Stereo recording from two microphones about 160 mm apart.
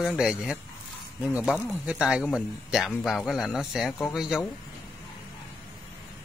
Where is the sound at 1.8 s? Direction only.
5° right (ahead or behind).